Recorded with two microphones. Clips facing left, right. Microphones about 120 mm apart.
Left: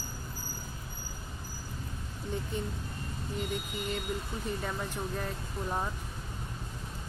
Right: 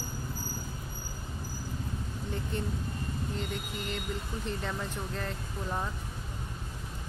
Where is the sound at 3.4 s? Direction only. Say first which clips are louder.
Left 1 dB; 10° left (ahead or behind).